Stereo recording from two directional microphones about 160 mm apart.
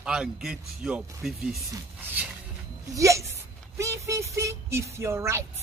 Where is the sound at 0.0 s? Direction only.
5° right (ahead or behind).